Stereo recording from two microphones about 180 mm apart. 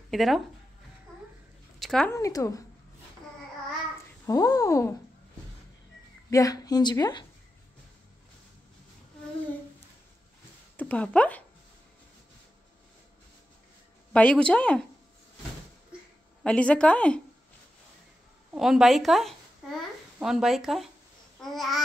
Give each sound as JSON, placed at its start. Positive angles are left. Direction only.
{"t": 0.1, "sound": "speech", "side_deg": 0}
{"t": 1.8, "sound": "a sound", "side_deg": 5}
{"t": 2.1, "sound": "a woman's voice", "side_deg": 15}
{"t": 4.3, "sound": "a woman's voice", "side_deg": 20}
{"t": 6.3, "sound": "speech", "side_deg": 20}
{"t": 10.8, "sound": "a woman's voice", "side_deg": 10}
{"t": 14.1, "sound": "a woman's voice", "side_deg": 5}
{"t": 16.4, "sound": "a woman's voice", "side_deg": 5}
{"t": 18.5, "sound": "a woman's voice", "side_deg": 0}